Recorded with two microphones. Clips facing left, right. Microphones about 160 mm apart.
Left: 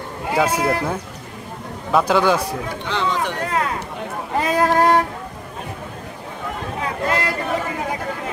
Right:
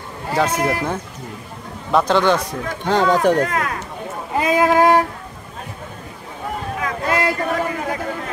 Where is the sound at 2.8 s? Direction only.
45° right (ahead or behind).